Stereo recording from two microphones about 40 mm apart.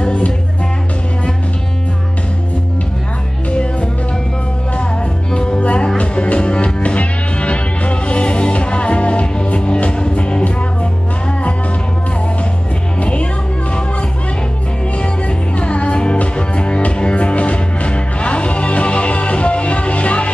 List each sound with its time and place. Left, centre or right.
0.0 s music: left
5.3 s music: left
13.0 s music: left
15.0 s music: left